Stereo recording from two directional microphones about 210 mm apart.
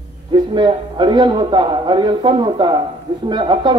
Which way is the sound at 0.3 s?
20° right (ahead or behind).